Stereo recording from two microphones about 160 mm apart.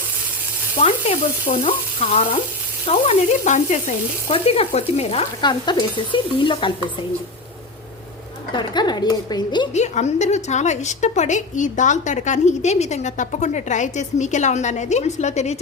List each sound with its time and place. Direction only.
0.8 s a woman's voice: 40° left (ahead or behind)
4.3 s speech: 40° left (ahead or behind)
8.5 s a woman's voice: 25° left (ahead or behind)
9.7 s a woman's voice: 45° left (ahead or behind)